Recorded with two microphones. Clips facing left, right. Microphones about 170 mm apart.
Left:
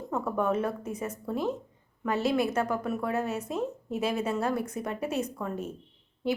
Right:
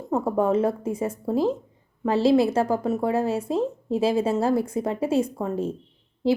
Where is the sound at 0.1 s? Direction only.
30° right (ahead or behind).